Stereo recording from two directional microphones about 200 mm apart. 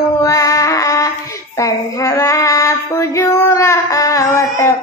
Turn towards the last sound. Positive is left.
turn(degrees=15)  # may be behind; listen again after turning